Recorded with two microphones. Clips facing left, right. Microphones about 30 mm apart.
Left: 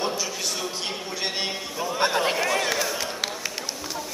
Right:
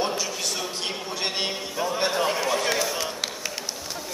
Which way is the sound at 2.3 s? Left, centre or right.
Centre.